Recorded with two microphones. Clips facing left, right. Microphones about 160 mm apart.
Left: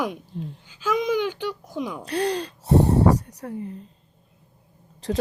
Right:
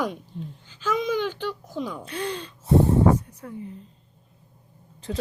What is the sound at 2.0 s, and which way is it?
Speech, 70° left (ahead or behind).